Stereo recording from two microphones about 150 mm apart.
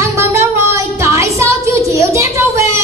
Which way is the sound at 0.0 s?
20° right (ahead or behind).